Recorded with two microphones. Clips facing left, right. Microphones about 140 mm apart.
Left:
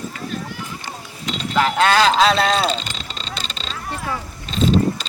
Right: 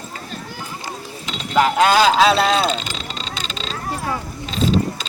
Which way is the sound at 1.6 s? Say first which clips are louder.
Right 2 dB; 10° right (ahead or behind).